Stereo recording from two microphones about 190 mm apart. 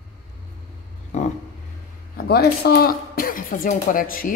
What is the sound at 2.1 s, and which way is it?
Speech, 55° left (ahead or behind).